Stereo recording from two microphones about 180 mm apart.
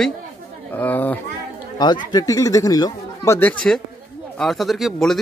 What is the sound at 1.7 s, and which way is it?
Speech, 25° left (ahead or behind).